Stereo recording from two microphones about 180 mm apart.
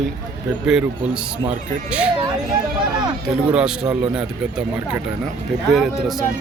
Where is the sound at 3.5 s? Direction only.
5° right (ahead or behind).